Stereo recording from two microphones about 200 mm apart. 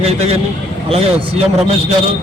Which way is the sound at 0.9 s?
30° right (ahead or behind).